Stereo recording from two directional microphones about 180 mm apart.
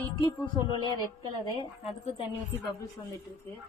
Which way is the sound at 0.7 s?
25° left (ahead or behind).